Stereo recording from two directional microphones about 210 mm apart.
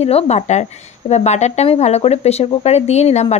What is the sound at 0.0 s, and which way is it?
A woman's voice, 30° left (ahead or behind).